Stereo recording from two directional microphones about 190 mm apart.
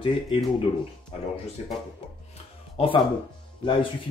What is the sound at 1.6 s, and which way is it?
Speech, 35° left (ahead or behind).